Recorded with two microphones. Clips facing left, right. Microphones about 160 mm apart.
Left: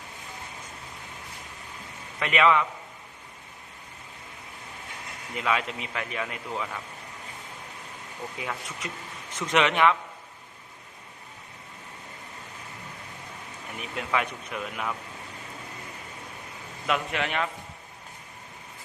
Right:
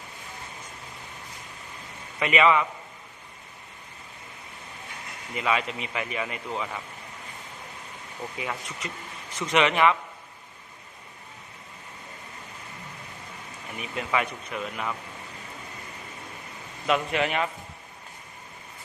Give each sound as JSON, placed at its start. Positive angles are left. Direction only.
{"t": 2.1, "sound": "a man's voice", "side_deg": 0}
{"t": 5.3, "sound": "a man's voice", "side_deg": 0}
{"t": 8.4, "sound": "a man's voice", "side_deg": 0}
{"t": 13.7, "sound": "a man's voice", "side_deg": 0}
{"t": 16.8, "sound": "a man's voice", "side_deg": 0}